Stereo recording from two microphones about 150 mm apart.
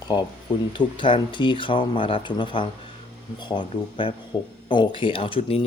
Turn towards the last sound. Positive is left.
turn(degrees=40)  # may be behind; listen again after turning